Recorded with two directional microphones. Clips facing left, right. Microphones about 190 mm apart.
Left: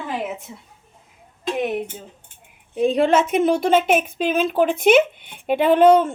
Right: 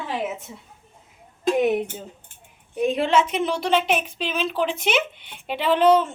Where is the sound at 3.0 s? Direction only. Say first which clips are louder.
Left 5 dB; 45° left (ahead or behind).